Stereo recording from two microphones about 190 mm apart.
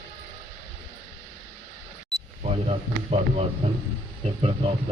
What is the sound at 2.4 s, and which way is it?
Speech, 35° right (ahead or behind).